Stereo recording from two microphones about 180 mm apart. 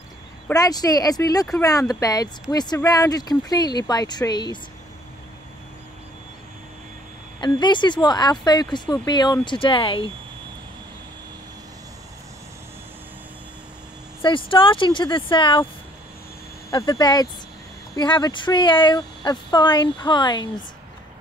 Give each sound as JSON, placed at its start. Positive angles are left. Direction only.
{"t": 0.5, "sound": "speech", "side_deg": 20}
{"t": 7.3, "sound": "speech", "side_deg": 25}
{"t": 14.2, "sound": "speech", "side_deg": 30}
{"t": 16.7, "sound": "speech", "side_deg": 20}